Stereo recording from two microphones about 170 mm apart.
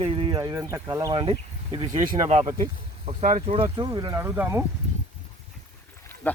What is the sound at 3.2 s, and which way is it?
Speech, 50° right (ahead or behind).